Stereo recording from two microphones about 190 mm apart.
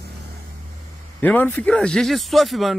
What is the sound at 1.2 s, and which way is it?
Speech, 10° left (ahead or behind).